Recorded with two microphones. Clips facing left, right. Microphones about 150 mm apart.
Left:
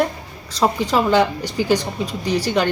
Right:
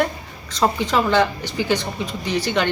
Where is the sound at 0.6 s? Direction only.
35° left (ahead or behind).